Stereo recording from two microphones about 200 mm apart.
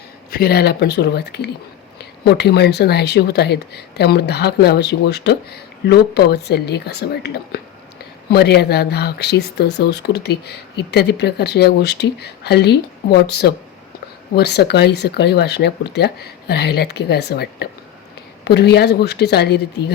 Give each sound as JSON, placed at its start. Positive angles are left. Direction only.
{"t": 0.3, "sound": "speech", "side_deg": 50}